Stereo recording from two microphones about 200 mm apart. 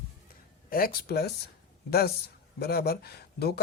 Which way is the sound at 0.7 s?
50° left (ahead or behind).